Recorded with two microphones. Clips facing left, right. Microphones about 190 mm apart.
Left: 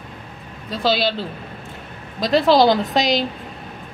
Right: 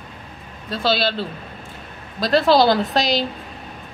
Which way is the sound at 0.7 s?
15° left (ahead or behind).